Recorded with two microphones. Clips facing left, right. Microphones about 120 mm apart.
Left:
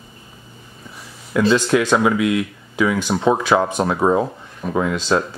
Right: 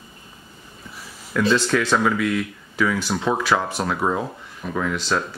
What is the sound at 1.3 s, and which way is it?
Speech, 15° left (ahead or behind).